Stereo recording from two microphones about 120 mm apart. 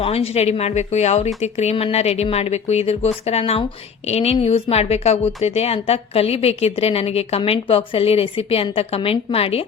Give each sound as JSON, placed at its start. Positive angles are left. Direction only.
{"t": 0.0, "sound": "a woman's voice", "side_deg": 55}